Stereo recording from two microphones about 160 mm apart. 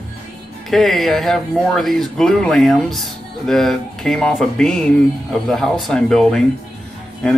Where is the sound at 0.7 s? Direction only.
Centre (ahead or behind).